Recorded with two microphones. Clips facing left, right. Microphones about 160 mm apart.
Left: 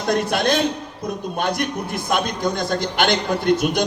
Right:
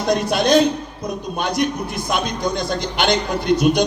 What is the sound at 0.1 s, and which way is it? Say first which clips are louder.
A man's voice: right 3 dB; 55° left (ahead or behind).